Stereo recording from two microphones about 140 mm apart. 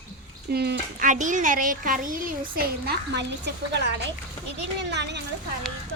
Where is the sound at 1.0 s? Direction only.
65° right (ahead or behind); by 2.9 s 90° right.